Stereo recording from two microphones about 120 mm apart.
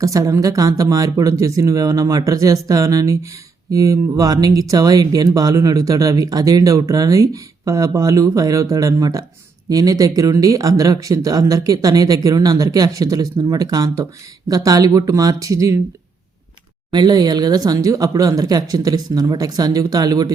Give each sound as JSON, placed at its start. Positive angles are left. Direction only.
{"t": 0.0, "sound": "speech", "side_deg": -25}
{"t": 16.9, "sound": "speech", "side_deg": -35}